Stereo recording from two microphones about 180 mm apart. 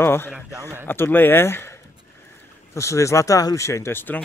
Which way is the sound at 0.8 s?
10° left (ahead or behind).